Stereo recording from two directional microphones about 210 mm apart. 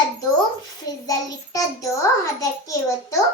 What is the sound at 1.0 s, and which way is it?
A child's voice, 15° left (ahead or behind).